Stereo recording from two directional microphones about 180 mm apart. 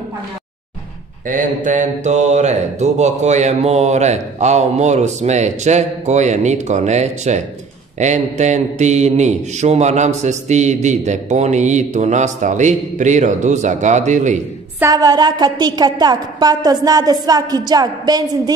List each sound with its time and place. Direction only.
1.3 s a man's voice: 45° right (ahead or behind)
14.8 s a woman's voice: 20° right (ahead or behind)